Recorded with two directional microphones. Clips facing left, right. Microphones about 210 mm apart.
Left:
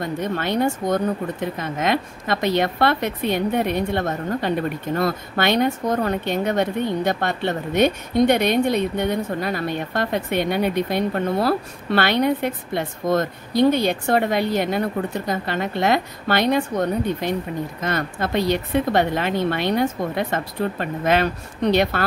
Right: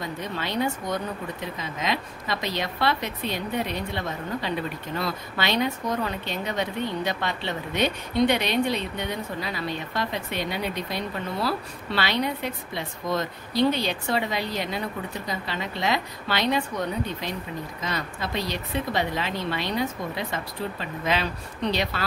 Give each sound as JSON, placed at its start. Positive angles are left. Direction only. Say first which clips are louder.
{"t": 0.0, "sound": "a woman's voice", "louder": "left 7 dB", "side_deg": 55}